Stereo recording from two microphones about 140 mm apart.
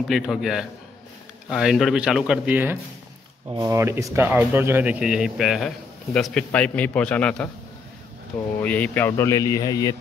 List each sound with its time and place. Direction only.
0.1 s speech: 5° right (ahead or behind)
3.4 s a man's voice: 25° right (ahead or behind); by 7.4 s 10° left (ahead or behind)
8.5 s speech: 10° left (ahead or behind); by 9.9 s 25° left (ahead or behind)